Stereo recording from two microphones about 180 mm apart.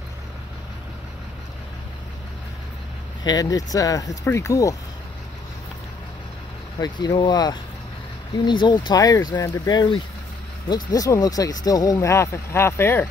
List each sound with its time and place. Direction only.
3.3 s speech: 20° left (ahead or behind)
6.8 s speech: 25° left (ahead or behind)